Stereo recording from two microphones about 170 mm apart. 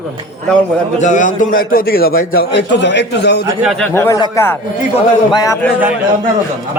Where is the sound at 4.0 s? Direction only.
15° left (ahead or behind).